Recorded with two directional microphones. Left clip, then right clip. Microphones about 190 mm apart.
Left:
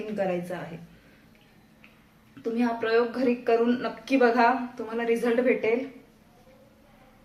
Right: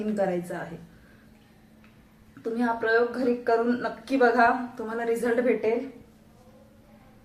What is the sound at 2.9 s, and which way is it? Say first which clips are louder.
A woman's voice: even; 10° right (ahead or behind).